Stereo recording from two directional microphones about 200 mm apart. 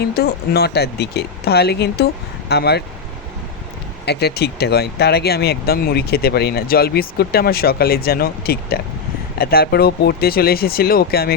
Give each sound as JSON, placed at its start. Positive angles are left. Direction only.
{"t": 0.0, "sound": "speech", "side_deg": 50}
{"t": 4.0, "sound": "speech", "side_deg": 55}